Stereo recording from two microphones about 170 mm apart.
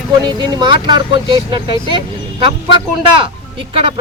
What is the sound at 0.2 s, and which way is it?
Speech, 25° right (ahead or behind).